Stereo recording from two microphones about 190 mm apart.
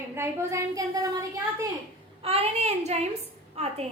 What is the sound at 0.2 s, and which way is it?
Speech, 15° right (ahead or behind).